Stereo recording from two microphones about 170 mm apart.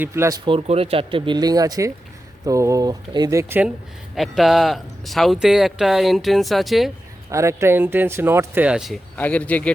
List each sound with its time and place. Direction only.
0.0 s speech: 20° right (ahead or behind)
4.1 s speech: centre (ahead or behind)
7.3 s speech: 15° right (ahead or behind)
9.1 s speech: 10° left (ahead or behind)